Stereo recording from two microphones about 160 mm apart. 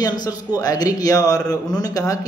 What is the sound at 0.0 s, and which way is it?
A man's voice, 25° left (ahead or behind).